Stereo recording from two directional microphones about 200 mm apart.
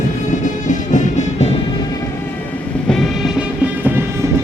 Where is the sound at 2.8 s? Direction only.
Centre (ahead or behind).